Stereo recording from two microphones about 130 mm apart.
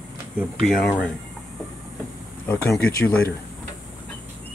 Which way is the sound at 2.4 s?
20° left (ahead or behind).